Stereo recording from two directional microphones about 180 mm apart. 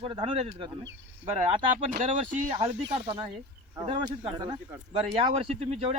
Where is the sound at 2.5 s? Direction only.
30° right (ahead or behind).